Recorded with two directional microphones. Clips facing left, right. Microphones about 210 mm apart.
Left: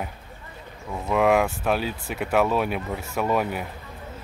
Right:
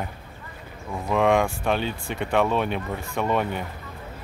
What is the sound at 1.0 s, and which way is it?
Speech, 5° left (ahead or behind).